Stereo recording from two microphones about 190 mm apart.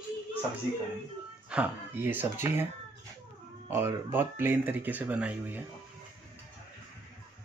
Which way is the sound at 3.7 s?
15° right (ahead or behind).